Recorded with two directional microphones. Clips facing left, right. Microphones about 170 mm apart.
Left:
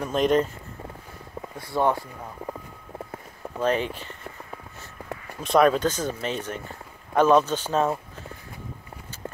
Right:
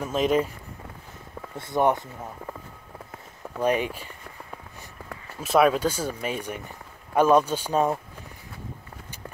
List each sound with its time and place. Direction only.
0.0 s speech: 5° right (ahead or behind)
1.6 s speech: 20° right (ahead or behind)
3.5 s speech: 10° right (ahead or behind)
5.4 s speech: 5° right (ahead or behind)